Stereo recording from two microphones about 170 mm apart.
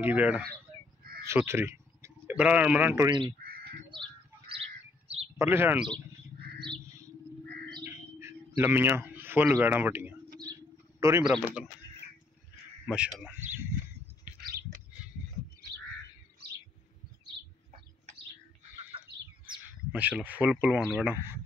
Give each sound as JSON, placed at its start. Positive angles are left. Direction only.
{"t": 0.0, "sound": "a man's voice", "side_deg": -10}
{"t": 3.1, "sound": "speech", "side_deg": -25}
{"t": 3.9, "sound": "bird", "side_deg": -30}
{"t": 5.4, "sound": "speech", "side_deg": -15}
{"t": 6.6, "sound": "bird", "side_deg": -30}
{"t": 7.8, "sound": "bird", "side_deg": -15}
{"t": 11.0, "sound": "a man's voice", "side_deg": -15}
{"t": 11.2, "sound": "speech", "side_deg": 0}
{"t": 12.9, "sound": "speech", "side_deg": -5}
{"t": 14.3, "sound": "bird", "side_deg": -5}
{"t": 18.9, "sound": "bird", "side_deg": -30}
{"t": 19.9, "sound": "speech", "side_deg": -5}